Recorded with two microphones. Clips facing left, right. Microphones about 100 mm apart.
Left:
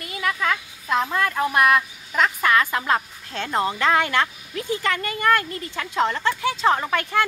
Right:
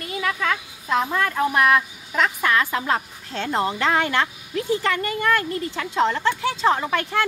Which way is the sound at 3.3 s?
15° right (ahead or behind).